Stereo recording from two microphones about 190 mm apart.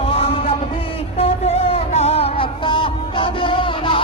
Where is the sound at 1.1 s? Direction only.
30° left (ahead or behind).